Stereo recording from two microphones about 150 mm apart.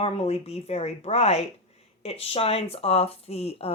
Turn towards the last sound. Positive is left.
turn(degrees=40)  # may be behind; listen again after turning